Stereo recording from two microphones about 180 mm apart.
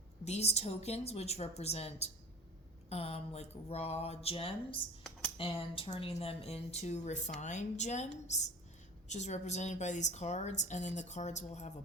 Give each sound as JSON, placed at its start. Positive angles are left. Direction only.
{"t": 0.3, "sound": "speech", "side_deg": 35}